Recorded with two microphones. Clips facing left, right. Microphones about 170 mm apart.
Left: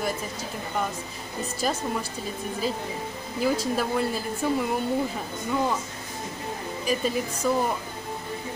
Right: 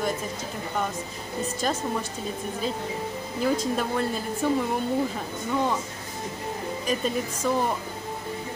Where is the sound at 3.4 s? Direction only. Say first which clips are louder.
Even; 5° left (ahead or behind).